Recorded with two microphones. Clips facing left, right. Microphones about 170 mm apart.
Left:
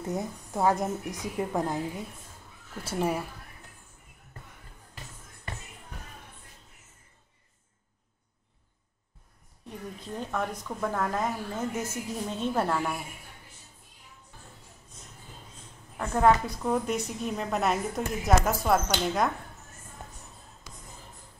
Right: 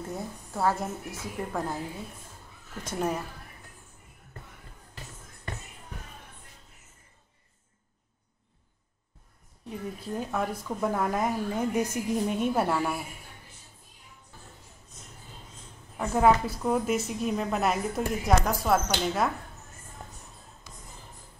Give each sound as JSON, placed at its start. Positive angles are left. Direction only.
{"t": 0.1, "sound": "a woman's voice", "side_deg": 20}
{"t": 2.8, "sound": "a woman's voice", "side_deg": 10}
{"t": 9.9, "sound": "a woman's voice", "side_deg": -5}
{"t": 16.0, "sound": "a woman's voice", "side_deg": -5}